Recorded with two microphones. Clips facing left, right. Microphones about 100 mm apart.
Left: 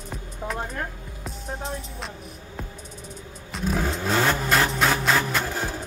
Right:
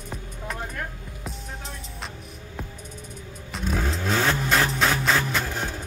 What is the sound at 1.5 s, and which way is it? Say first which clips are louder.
Music: left 7 dB; 35° left (ahead or behind).